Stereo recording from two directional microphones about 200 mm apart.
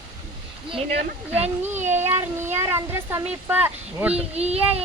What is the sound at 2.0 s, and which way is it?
Child singing, 35° right (ahead or behind).